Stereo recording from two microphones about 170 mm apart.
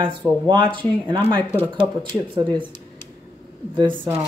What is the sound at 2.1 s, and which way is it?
Speech, 10° left (ahead or behind).